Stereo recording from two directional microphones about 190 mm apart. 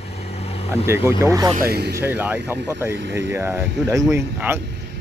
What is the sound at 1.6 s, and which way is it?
Speech, 55° right (ahead or behind).